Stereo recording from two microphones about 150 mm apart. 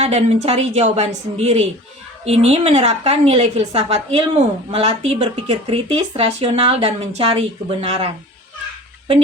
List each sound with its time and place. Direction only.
0.0 s a woman's voice: 45° right (ahead or behind)